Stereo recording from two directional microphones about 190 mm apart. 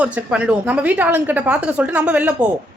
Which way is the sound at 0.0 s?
5° right (ahead or behind).